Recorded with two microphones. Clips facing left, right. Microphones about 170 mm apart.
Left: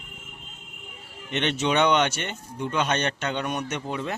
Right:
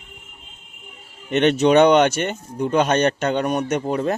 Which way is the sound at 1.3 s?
45° right (ahead or behind).